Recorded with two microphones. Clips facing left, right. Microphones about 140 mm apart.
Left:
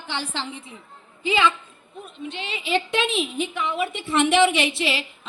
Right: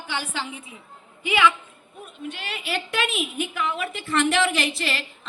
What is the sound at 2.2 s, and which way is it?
A woman's voice, 5° right (ahead or behind).